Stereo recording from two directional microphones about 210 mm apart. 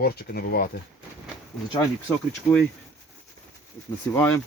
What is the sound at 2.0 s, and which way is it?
Speech, 5° left (ahead or behind).